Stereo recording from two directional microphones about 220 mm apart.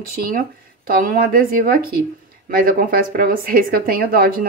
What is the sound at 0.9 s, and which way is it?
A woman's voice, 40° right (ahead or behind).